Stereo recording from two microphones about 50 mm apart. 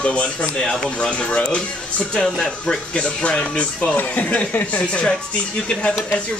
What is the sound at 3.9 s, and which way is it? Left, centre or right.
Speech, left.